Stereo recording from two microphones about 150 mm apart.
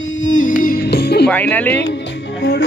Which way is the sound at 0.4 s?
65° left (ahead or behind).